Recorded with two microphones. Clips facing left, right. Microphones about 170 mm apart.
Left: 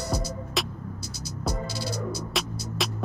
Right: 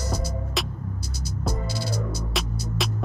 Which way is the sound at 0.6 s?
Centre (ahead or behind).